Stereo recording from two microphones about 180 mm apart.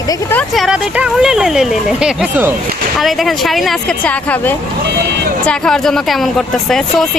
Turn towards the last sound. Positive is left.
turn(degrees=0)  # may be behind; listen again after turning